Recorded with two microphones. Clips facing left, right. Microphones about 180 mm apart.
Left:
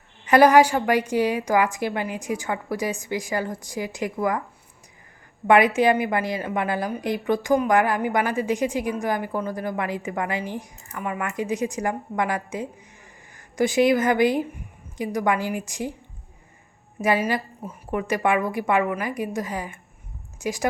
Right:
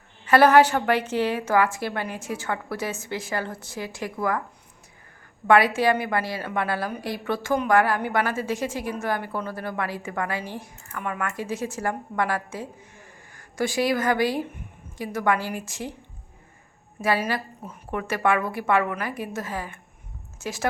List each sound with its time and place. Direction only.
0.3 s a woman's voice: 15° left (ahead or behind)
5.5 s a woman's voice: 20° left (ahead or behind)
17.0 s a woman's voice: 15° left (ahead or behind)